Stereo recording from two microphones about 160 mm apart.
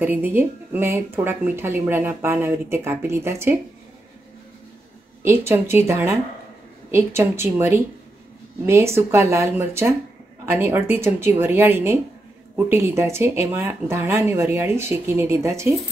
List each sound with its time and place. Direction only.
0.0 s a woman's voice: 10° right (ahead or behind)
5.2 s a woman's voice: 15° right (ahead or behind)